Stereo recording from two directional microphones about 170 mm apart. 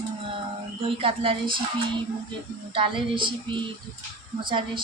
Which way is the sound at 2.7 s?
30° right (ahead or behind).